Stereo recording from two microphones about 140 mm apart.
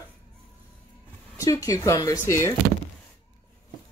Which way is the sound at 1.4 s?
25° left (ahead or behind).